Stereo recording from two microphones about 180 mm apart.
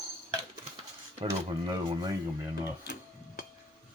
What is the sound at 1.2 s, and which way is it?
Speech, 30° right (ahead or behind).